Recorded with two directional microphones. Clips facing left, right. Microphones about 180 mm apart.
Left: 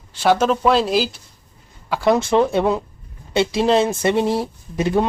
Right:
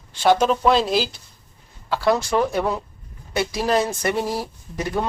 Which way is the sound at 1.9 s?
20° left (ahead or behind).